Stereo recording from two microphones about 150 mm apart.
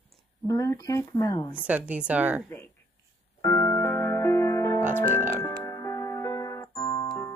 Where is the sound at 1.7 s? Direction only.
10° right (ahead or behind).